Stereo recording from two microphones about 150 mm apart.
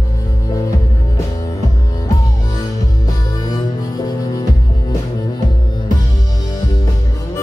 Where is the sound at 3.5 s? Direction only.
25° left (ahead or behind).